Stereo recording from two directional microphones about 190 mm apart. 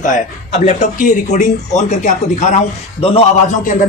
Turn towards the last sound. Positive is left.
turn(degrees=40)  # may be behind; listen again after turning